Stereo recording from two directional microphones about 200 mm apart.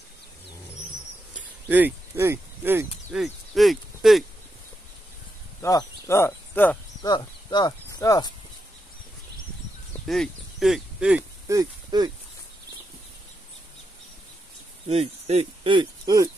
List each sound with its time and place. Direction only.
1.3 s a sound: 10° right (ahead or behind)
3.2 s speech: centre (ahead or behind)
5.6 s speech: 15° left (ahead or behind)
7.1 s speech: 20° left (ahead or behind)
10.0 s speech: centre (ahead or behind); by 12.1 s 20° right (ahead or behind)
14.9 s speech: 30° right (ahead or behind)